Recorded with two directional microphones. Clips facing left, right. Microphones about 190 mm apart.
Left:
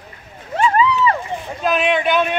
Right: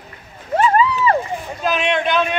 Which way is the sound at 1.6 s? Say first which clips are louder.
Left 2 dB; 5° left (ahead or behind).